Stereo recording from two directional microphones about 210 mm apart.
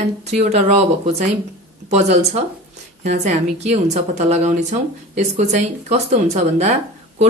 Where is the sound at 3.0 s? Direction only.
30° right (ahead or behind).